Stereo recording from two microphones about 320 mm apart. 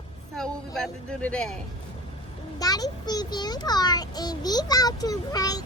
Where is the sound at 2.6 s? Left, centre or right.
Centre.